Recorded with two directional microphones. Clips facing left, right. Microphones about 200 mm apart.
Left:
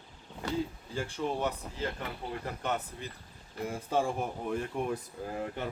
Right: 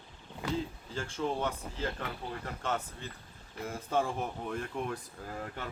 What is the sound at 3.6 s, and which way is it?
Speech, 10° left (ahead or behind).